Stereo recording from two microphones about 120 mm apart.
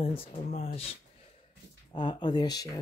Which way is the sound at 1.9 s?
40° left (ahead or behind).